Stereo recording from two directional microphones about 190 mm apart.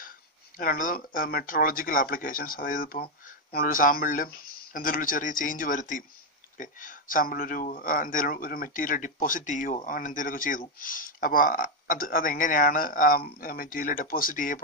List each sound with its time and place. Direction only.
0.6 s speech: 45° left (ahead or behind)